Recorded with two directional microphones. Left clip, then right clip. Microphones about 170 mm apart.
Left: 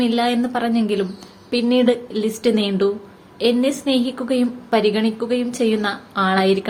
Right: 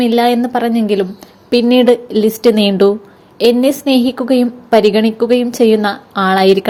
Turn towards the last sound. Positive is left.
turn(degrees=-40)  # may be behind; listen again after turning